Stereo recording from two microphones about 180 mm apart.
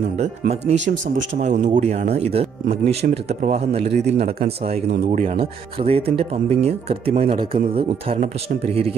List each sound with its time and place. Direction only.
0.2 s speech: 35° right (ahead or behind)